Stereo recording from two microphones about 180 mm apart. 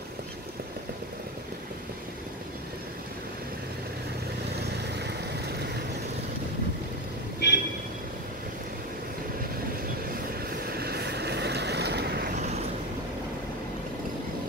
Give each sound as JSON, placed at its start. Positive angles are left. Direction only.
{"t": 7.3, "sound": "vehicle", "side_deg": 65}
{"t": 10.7, "sound": "vehicle", "side_deg": -60}